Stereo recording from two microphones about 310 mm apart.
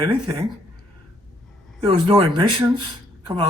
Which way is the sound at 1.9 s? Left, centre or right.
Centre.